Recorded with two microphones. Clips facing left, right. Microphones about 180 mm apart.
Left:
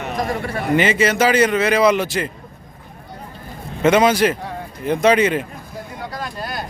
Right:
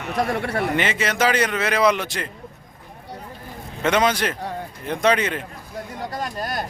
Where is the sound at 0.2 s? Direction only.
65° right (ahead or behind).